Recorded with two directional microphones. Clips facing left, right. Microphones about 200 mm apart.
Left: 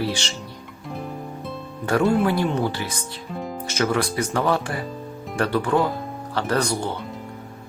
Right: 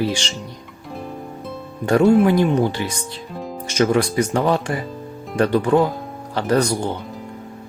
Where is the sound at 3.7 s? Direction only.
25° right (ahead or behind).